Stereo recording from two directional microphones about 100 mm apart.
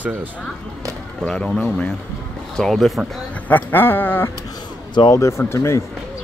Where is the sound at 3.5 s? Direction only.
20° left (ahead or behind).